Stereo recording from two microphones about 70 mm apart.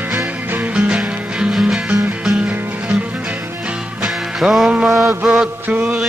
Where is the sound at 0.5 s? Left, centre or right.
Centre.